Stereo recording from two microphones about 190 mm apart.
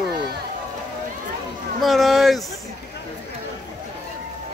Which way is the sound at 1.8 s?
Centre (ahead or behind).